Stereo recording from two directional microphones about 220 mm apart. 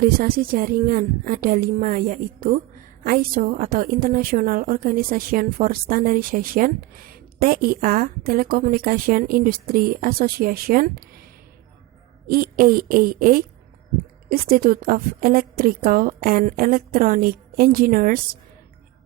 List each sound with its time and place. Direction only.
0.0 s a woman's voice: 40° right (ahead or behind)
12.3 s a woman's voice: 40° right (ahead or behind)